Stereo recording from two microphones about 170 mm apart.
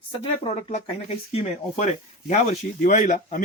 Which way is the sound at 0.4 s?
40° left (ahead or behind).